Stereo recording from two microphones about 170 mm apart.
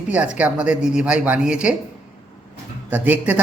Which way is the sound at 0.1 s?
10° right (ahead or behind).